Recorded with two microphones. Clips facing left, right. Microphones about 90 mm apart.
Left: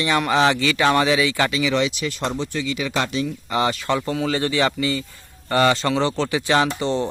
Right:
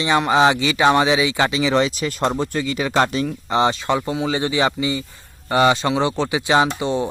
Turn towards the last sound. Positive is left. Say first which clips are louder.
# right 2 dB
turn(degrees=-15)  # may be behind; listen again after turning